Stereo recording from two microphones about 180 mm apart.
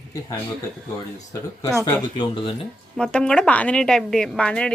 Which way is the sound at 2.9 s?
5° left (ahead or behind).